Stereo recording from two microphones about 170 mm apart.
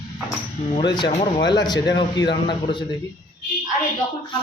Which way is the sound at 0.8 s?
25° left (ahead or behind).